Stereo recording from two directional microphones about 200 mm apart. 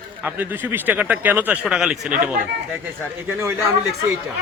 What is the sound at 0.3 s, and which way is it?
Speech, 10° right (ahead or behind).